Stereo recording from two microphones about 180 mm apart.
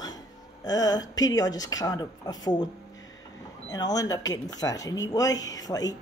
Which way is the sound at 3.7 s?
20° left (ahead or behind).